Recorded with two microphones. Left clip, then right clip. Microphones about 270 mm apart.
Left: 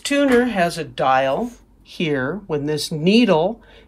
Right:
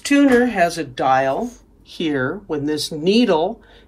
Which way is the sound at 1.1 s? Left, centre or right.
Left.